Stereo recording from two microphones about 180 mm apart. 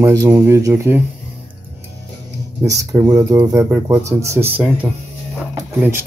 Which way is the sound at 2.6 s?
20° right (ahead or behind).